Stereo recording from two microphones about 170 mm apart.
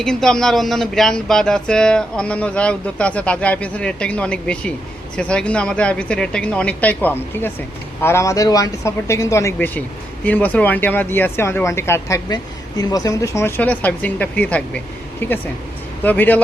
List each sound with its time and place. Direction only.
0.0 s speech: 5° left (ahead or behind)